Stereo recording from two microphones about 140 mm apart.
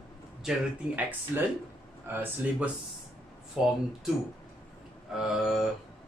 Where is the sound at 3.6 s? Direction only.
5° right (ahead or behind).